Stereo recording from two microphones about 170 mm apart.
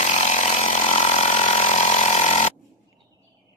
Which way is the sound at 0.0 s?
45° left (ahead or behind).